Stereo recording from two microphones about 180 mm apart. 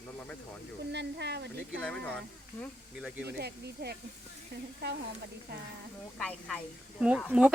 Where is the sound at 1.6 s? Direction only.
5° left (ahead or behind).